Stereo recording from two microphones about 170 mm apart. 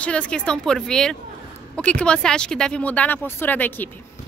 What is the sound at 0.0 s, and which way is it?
Speech, 5° left (ahead or behind).